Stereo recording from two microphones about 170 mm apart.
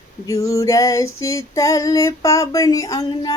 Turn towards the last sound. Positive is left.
turn(degrees=20)  # may be behind; listen again after turning